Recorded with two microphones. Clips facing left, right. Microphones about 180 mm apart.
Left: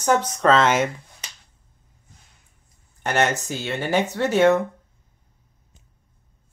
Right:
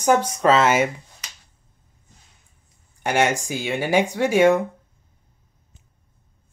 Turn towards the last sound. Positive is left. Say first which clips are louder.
# right 1 dB
turn(degrees=-10)  # may be behind; listen again after turning